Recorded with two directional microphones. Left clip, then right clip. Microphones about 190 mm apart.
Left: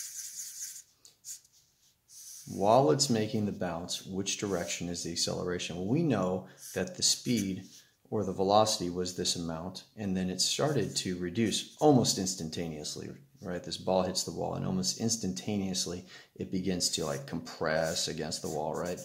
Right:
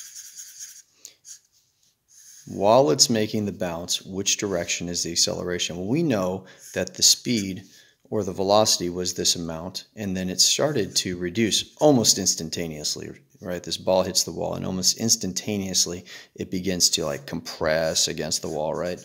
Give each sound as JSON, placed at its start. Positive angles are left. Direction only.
{"t": 2.6, "sound": "speech", "side_deg": -55}